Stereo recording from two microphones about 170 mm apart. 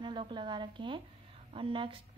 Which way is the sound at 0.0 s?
30° right (ahead or behind).